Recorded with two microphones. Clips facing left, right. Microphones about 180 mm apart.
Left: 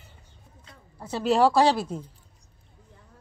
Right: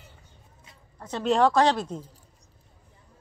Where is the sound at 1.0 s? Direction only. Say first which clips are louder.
Left 1 dB; 5° left (ahead or behind).